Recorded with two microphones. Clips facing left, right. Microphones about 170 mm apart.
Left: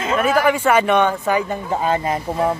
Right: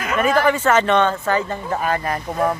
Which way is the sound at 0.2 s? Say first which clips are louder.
Right 1 dB; 10° left (ahead or behind).